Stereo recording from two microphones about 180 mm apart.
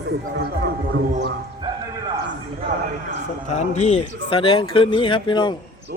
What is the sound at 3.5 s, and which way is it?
Speech, 40° left (ahead or behind).